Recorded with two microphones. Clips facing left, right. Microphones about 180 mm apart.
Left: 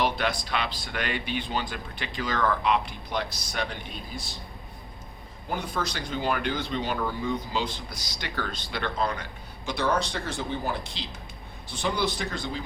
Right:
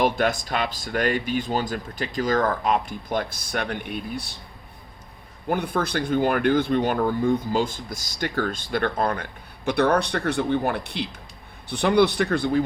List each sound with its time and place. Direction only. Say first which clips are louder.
0.0 s speech: right 5 dB; 45° right (ahead or behind); by 4.4 s 65° right (ahead or behind)
5.5 s speech: right 6 dB; 55° right (ahead or behind)